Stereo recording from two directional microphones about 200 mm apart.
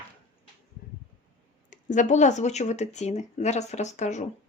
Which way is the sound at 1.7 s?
40° left (ahead or behind).